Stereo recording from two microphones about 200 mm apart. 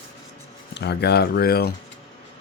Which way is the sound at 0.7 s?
55° left (ahead or behind).